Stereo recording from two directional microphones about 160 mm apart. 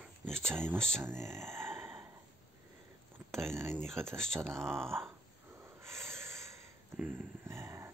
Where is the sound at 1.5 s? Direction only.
15° right (ahead or behind).